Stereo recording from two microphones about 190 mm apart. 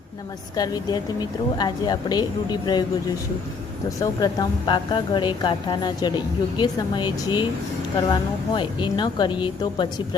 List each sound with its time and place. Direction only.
0.5 s a woman's voice: 20° left (ahead or behind)
3.8 s a woman's voice: 20° left (ahead or behind)